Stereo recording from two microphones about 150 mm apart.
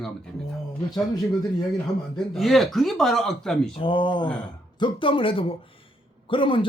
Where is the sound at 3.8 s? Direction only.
35° left (ahead or behind).